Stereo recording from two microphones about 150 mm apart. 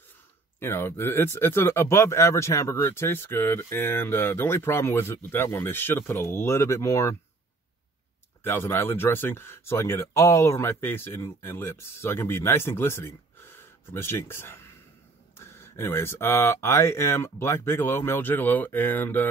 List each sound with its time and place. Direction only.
0.6 s speech: 15° left (ahead or behind)
8.5 s speech: 15° left (ahead or behind)